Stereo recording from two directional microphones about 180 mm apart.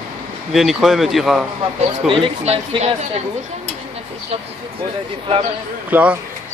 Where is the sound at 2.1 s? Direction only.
35° right (ahead or behind).